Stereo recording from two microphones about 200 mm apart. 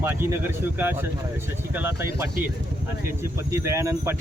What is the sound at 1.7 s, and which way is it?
Speech, 10° right (ahead or behind).